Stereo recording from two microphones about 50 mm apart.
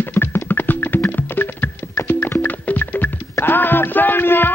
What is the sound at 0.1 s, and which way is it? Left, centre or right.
Music, left.